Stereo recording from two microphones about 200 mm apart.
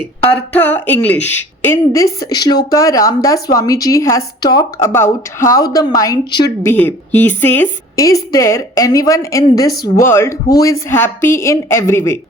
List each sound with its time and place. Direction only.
0.5 s a woman's voice: 10° left (ahead or behind)